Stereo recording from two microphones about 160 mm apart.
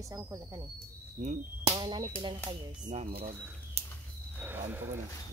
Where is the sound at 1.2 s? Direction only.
50° right (ahead or behind).